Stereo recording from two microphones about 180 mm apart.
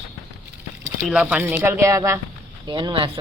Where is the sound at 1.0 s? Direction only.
5° right (ahead or behind).